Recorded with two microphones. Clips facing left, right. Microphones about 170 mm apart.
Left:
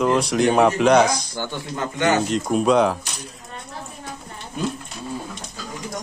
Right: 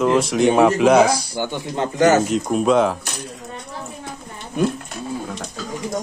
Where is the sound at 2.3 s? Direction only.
Centre (ahead or behind).